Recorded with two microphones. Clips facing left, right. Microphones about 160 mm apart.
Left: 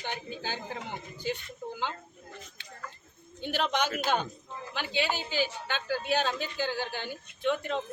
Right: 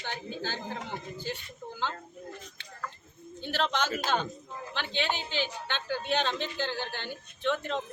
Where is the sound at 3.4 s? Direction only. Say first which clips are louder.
Left 1 dB; 15° left (ahead or behind).